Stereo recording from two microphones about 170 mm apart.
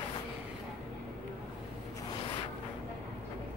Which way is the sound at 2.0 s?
30° left (ahead or behind).